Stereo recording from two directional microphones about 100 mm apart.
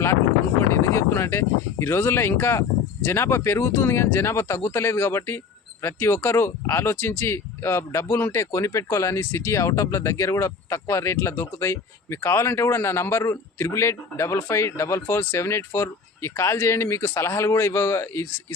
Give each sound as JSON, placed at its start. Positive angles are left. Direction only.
{"t": 0.7, "sound": "speech", "side_deg": 25}